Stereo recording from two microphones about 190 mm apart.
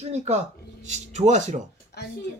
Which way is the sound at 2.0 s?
60° left (ahead or behind).